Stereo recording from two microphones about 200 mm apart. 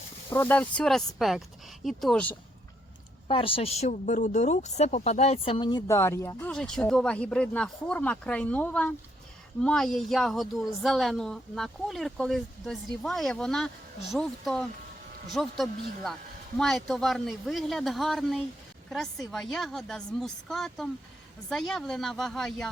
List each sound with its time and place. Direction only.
0.3 s speech: 10° left (ahead or behind)
3.2 s speech: 25° left (ahead or behind); by 22.7 s centre (ahead or behind)